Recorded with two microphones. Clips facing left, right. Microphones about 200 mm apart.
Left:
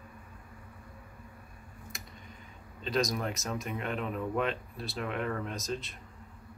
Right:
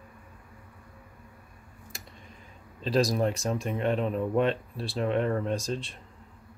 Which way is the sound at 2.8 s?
30° right (ahead or behind).